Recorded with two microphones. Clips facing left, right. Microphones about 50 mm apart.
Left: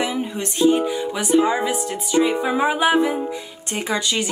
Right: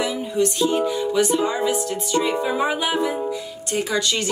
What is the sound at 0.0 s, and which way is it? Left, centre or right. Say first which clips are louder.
Music: right 2 dB; left.